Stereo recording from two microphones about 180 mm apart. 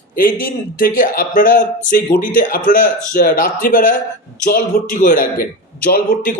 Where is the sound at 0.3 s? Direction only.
50° left (ahead or behind).